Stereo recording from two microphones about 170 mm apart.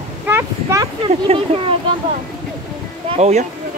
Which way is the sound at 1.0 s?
35° right (ahead or behind).